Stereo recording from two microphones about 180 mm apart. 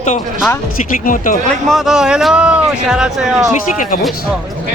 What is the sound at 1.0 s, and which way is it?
Speech, 50° left (ahead or behind).